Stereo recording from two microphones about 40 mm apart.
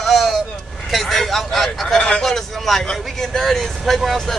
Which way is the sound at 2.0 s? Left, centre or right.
Centre.